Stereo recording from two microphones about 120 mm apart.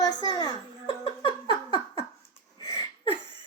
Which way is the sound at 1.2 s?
45° left (ahead or behind).